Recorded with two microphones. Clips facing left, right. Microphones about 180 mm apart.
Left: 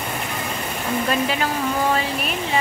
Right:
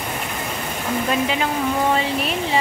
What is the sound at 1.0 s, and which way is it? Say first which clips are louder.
Speech: right 1 dB; 15° right (ahead or behind).